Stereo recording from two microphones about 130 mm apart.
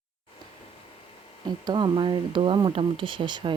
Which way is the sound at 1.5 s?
35° right (ahead or behind).